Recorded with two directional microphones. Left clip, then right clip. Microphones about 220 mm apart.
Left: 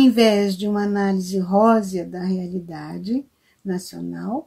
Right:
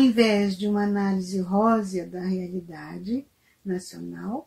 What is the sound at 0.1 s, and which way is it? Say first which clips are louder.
Speech: left 5 dB; 40° left (ahead or behind).